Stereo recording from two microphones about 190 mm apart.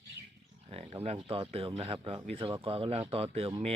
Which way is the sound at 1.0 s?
30° right (ahead or behind).